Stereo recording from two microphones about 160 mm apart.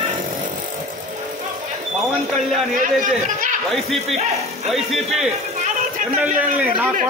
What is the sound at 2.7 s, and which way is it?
Speech, 55° right (ahead or behind).